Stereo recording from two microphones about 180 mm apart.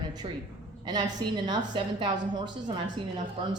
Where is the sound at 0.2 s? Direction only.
30° right (ahead or behind).